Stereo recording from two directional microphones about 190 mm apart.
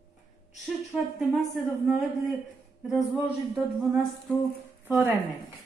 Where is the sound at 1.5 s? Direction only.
Centre (ahead or behind).